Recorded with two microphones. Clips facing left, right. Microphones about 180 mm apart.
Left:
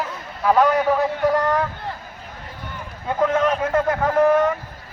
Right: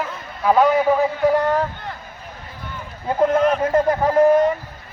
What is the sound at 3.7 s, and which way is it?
Speech, 35° right (ahead or behind).